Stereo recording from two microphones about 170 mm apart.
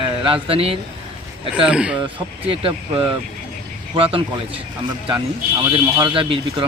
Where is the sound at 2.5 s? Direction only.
30° right (ahead or behind).